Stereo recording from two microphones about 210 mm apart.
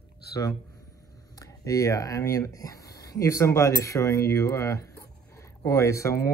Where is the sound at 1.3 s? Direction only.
15° left (ahead or behind).